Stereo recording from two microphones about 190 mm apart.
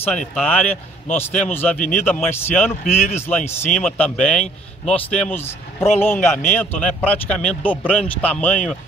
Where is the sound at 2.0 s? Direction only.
5° left (ahead or behind).